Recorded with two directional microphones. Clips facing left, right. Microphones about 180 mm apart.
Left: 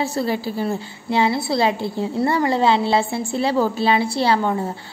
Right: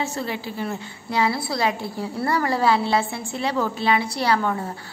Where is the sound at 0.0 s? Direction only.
35° left (ahead or behind).